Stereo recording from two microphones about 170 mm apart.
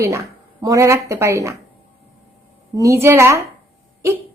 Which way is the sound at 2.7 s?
20° right (ahead or behind).